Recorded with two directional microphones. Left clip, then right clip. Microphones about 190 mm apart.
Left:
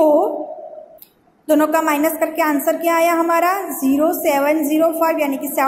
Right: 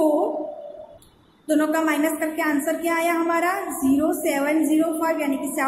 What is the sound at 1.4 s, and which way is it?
Speech, 20° left (ahead or behind).